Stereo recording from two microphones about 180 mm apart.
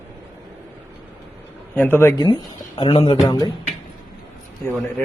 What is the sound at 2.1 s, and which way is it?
Speech, 25° left (ahead or behind).